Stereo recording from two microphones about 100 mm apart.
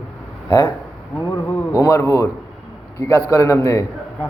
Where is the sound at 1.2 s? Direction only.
25° left (ahead or behind).